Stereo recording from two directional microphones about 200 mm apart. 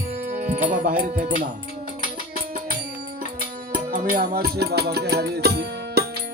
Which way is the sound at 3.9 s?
45° right (ahead or behind).